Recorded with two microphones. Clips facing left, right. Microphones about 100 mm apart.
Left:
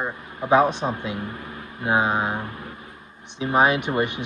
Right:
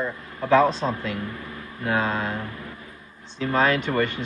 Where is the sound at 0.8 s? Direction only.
20° left (ahead or behind).